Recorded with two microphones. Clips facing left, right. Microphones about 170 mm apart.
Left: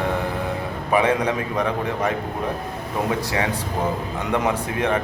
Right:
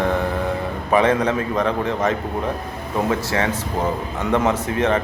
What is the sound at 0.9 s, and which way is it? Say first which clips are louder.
A man's voice: right 2 dB; 10° left (ahead or behind).